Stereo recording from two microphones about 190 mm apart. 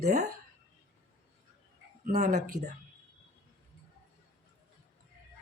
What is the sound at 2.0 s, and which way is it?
Speech, 50° right (ahead or behind).